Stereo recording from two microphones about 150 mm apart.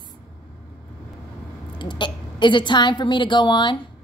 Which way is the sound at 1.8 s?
30° left (ahead or behind).